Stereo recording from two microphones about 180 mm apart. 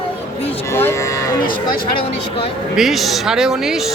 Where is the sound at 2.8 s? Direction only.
Centre (ahead or behind).